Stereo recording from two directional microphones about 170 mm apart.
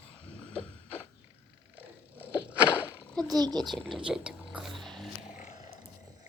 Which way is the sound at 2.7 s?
10° left (ahead or behind).